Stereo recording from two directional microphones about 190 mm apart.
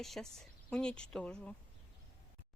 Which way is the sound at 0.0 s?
Centre (ahead or behind).